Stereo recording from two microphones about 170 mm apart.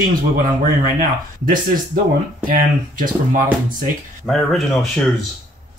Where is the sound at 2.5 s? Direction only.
55° right (ahead or behind).